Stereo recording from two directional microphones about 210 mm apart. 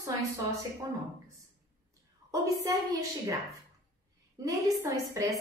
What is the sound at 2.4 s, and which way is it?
Speech, 15° right (ahead or behind).